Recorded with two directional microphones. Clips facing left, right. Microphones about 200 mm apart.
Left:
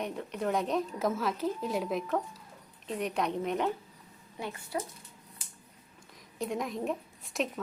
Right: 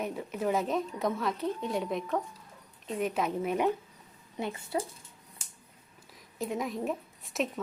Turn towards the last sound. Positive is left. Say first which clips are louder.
# right 1 dB
turn(degrees=0)  # may be behind; listen again after turning